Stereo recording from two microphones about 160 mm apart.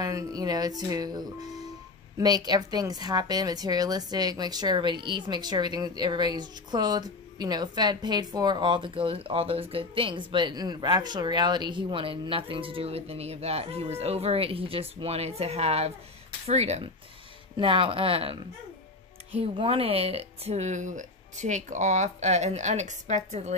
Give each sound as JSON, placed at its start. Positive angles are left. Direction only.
{"t": 0.0, "sound": "a woman's voice", "side_deg": -20}